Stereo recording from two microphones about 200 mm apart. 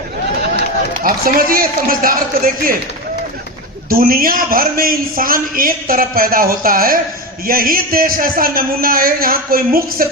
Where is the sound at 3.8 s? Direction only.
45° right (ahead or behind).